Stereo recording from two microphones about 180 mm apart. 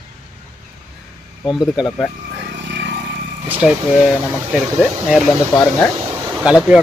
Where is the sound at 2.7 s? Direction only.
75° right (ahead or behind).